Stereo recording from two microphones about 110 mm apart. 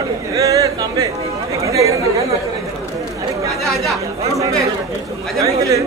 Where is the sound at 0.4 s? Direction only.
30° right (ahead or behind).